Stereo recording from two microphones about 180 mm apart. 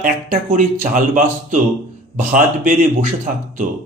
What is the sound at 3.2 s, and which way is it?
Speech, 45° right (ahead or behind).